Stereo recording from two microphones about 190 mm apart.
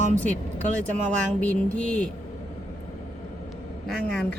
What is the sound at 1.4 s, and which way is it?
Mantra, 5° left (ahead or behind).